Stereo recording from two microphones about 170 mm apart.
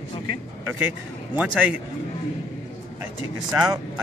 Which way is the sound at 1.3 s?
10° right (ahead or behind).